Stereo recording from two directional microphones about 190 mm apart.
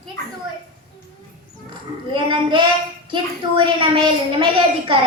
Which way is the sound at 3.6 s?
25° right (ahead or behind).